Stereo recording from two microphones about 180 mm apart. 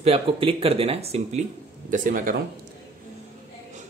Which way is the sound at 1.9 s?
50° right (ahead or behind).